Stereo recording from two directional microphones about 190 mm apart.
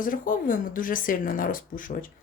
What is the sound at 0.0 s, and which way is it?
Speech, 45° left (ahead or behind).